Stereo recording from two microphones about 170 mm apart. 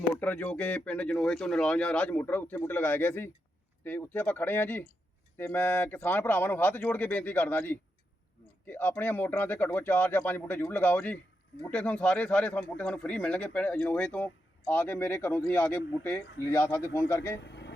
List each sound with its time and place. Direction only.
0.2 s speech: 10° left (ahead or behind)
17.4 s vehicle: 90° left